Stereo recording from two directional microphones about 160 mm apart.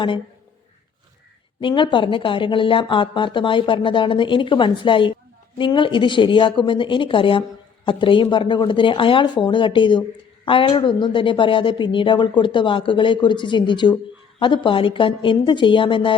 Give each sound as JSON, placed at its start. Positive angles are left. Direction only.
{"t": 1.6, "sound": "speech", "side_deg": 30}